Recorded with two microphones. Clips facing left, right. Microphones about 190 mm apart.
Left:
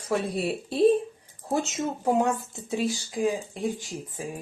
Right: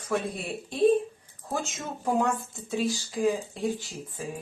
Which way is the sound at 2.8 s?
15° left (ahead or behind).